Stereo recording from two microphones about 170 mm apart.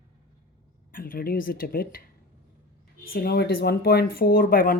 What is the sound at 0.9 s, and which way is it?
Speech, 55° left (ahead or behind).